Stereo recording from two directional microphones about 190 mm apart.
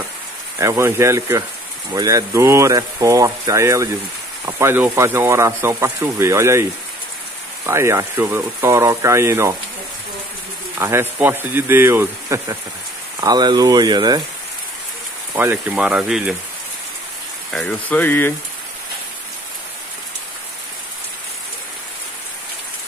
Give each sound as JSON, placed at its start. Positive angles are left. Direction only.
{"t": 0.6, "sound": "speech", "side_deg": -15}
{"t": 7.6, "sound": "speech", "side_deg": -15}
{"t": 10.8, "sound": "speech", "side_deg": -10}
{"t": 15.3, "sound": "speech", "side_deg": -10}
{"t": 17.5, "sound": "speech", "side_deg": 5}